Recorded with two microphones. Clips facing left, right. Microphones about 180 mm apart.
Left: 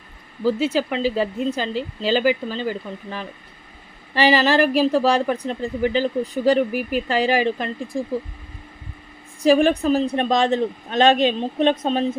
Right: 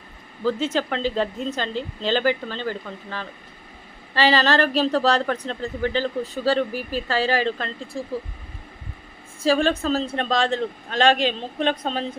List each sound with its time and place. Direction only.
0.4 s speech: 10° left (ahead or behind)
9.4 s speech: 15° left (ahead or behind)